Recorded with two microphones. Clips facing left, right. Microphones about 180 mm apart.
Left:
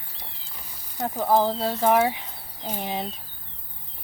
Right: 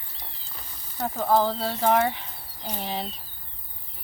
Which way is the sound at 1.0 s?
15° left (ahead or behind).